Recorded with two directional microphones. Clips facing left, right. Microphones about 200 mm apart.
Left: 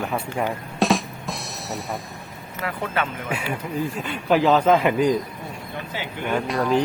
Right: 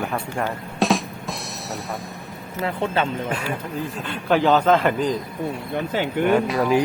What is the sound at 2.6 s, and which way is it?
Speech, 25° right (ahead or behind).